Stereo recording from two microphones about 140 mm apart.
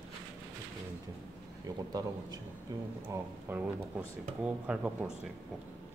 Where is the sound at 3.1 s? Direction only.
15° right (ahead or behind).